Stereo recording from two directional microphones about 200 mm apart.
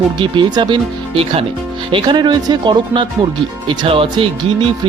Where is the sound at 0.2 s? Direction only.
20° right (ahead or behind).